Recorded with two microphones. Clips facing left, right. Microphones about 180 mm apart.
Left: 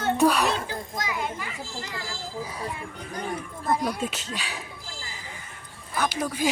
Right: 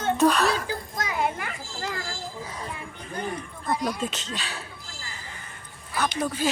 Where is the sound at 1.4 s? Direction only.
55° right (ahead or behind).